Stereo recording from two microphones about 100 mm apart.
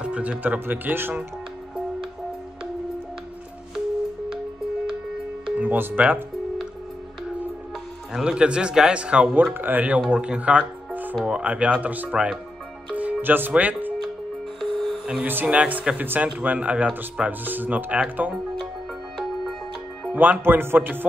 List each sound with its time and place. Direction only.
0.0 s a man's voice: 10° right (ahead or behind)
5.6 s a man's voice: 20° right (ahead or behind)
8.1 s a man's voice: 10° right (ahead or behind)
12.9 s music: 15° right (ahead or behind)
14.6 s music: centre (ahead or behind)
15.0 s a man's voice: 15° right (ahead or behind)
20.1 s speech: 15° right (ahead or behind)